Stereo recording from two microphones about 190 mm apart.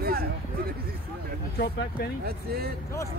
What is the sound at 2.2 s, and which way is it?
Speech, 55° right (ahead or behind).